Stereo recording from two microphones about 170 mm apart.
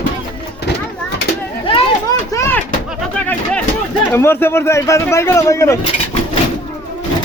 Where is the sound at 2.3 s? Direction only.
15° left (ahead or behind).